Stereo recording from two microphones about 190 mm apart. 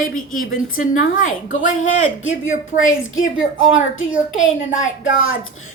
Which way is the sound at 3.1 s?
90° left.